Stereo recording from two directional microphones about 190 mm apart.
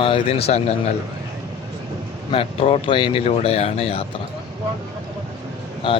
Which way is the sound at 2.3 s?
30° left (ahead or behind).